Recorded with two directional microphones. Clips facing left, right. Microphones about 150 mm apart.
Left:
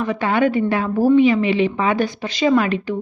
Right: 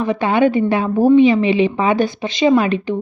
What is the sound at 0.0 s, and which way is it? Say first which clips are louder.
A woman's voice: right 3 dB; 20° right (ahead or behind).